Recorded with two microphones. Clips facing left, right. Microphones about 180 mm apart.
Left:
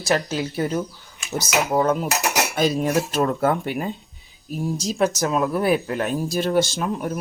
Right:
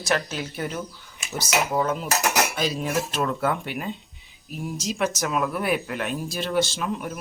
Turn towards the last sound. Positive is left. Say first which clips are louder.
# left 4 dB
turn(degrees=40)  # may be behind; listen again after turning